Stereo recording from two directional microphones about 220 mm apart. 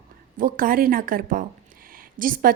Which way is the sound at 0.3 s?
40° right (ahead or behind).